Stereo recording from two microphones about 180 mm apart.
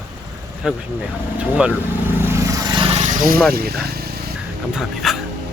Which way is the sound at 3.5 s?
60° right (ahead or behind).